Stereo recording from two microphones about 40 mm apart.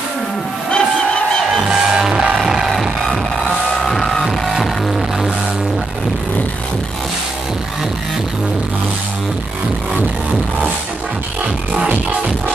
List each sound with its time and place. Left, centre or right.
0.7 s crowd: left
1.5 s music: centre
3.8 s music: centre
11.7 s music: right